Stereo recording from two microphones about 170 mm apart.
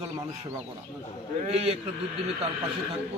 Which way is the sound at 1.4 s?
35° right (ahead or behind).